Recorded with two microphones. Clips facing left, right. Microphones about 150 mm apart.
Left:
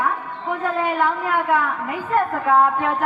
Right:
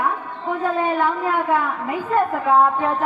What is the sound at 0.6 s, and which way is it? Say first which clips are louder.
A woman's voice: right 1 dB; 20° right (ahead or behind).